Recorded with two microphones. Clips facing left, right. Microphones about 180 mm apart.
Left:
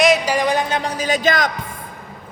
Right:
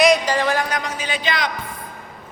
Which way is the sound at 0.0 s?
Centre (ahead or behind).